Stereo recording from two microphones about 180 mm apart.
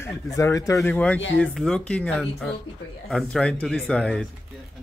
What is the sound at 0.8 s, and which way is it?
Speech, 5° left (ahead or behind).